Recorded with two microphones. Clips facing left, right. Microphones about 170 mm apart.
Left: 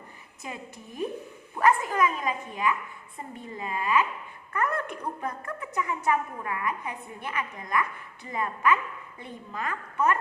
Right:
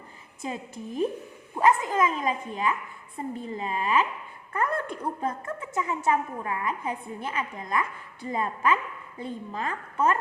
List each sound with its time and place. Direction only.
0.4 s a woman's voice: 30° right (ahead or behind)